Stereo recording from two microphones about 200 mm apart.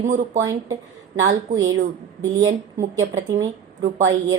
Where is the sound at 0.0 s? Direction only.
35° right (ahead or behind).